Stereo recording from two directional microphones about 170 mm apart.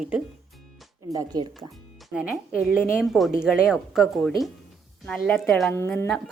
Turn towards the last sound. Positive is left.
turn(degrees=10)  # may be behind; listen again after turning